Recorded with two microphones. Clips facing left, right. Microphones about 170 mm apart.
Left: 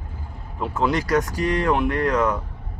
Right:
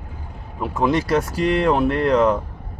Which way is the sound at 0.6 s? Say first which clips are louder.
Right 3 dB; 15° right (ahead or behind).